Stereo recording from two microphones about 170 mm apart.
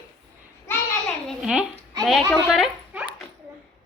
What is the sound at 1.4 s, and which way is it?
Speech, 5° right (ahead or behind).